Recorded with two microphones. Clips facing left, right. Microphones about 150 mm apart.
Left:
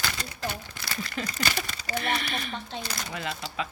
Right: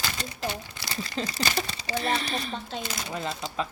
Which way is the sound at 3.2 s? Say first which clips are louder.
Right 2 dB; 35° right (ahead or behind).